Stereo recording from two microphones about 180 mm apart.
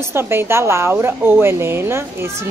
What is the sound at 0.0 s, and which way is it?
Speech, 15° right (ahead or behind).